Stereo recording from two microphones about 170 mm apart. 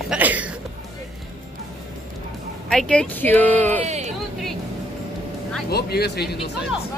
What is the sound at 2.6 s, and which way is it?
Speech, 5° left (ahead or behind).